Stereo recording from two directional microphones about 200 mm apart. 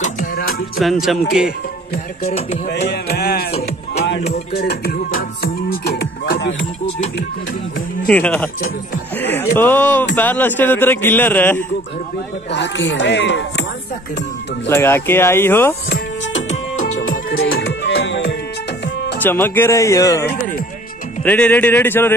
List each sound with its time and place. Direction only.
0.0 s music: 45° left (ahead or behind)
0.7 s music: centre (ahead or behind)
2.7 s music: 55° left (ahead or behind)
4.5 s music: 55° left (ahead or behind)
8.1 s a man's voice: 5° left (ahead or behind)
12.4 s speech: 60° left (ahead or behind)
14.7 s a man's voice: 10° left (ahead or behind)
16.4 s music: 35° left (ahead or behind); by 18.3 s 65° left (ahead or behind)
19.2 s a man's voice: 10° left (ahead or behind)